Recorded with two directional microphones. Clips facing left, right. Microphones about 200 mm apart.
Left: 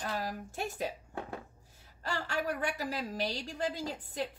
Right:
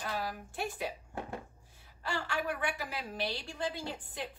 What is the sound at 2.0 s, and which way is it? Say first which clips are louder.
A woman's voice: left 1 dB; 40° left (ahead or behind).